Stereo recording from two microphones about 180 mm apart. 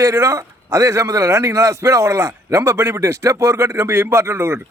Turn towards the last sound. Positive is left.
turn(degrees=-15)  # may be behind; listen again after turning